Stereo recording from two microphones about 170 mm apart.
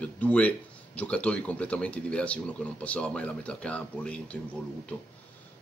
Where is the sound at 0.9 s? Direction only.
5° left (ahead or behind).